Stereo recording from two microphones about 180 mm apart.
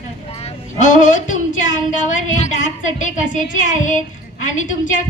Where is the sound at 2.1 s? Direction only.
45° left (ahead or behind).